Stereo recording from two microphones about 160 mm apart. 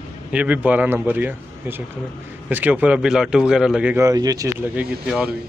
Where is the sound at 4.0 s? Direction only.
20° right (ahead or behind).